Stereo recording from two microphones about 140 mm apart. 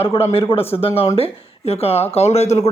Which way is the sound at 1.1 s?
45° left (ahead or behind).